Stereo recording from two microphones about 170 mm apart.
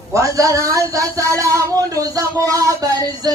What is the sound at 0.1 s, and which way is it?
A man's voice, 20° right (ahead or behind).